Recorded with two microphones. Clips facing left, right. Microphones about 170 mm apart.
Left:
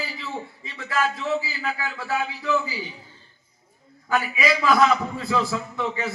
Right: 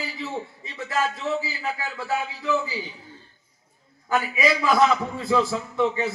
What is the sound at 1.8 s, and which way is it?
Speech, 20° right (ahead or behind).